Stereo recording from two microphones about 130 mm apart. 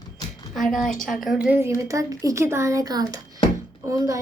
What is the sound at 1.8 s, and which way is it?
A woman's voice, 25° right (ahead or behind).